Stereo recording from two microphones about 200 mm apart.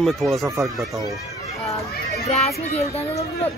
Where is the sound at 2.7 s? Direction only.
30° left (ahead or behind).